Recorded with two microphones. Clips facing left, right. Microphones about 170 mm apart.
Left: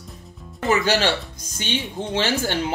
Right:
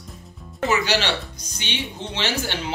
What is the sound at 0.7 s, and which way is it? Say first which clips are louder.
Speech: left 3 dB; 50° left (ahead or behind).